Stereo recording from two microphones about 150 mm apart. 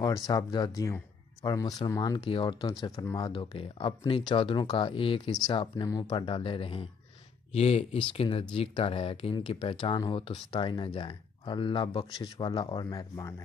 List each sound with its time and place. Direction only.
0.0 s speech: 25° left (ahead or behind)